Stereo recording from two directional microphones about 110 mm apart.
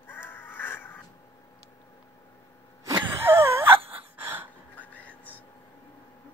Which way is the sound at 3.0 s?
20° right (ahead or behind).